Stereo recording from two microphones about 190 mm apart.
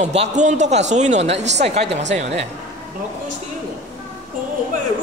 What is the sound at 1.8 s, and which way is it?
Speech, 65° right (ahead or behind).